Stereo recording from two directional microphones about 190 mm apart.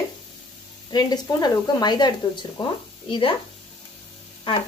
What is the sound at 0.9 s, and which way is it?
Speech, 20° left (ahead or behind).